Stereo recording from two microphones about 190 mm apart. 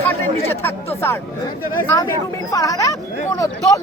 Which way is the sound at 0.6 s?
10° left (ahead or behind).